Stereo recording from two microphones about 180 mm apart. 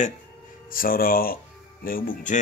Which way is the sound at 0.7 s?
50° left (ahead or behind).